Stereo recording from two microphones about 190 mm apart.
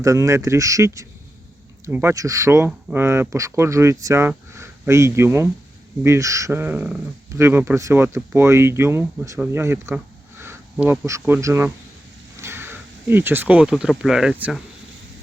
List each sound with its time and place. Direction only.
0.0 s speech: 15° right (ahead or behind)